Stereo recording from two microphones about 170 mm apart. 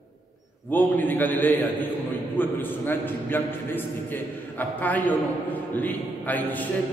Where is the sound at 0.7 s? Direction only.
10° left (ahead or behind).